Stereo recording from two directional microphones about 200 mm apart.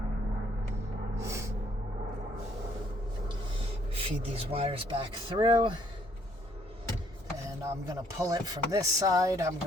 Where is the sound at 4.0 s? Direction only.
30° right (ahead or behind).